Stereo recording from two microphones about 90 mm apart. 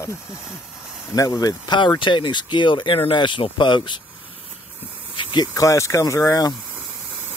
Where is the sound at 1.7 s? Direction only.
60° left (ahead or behind).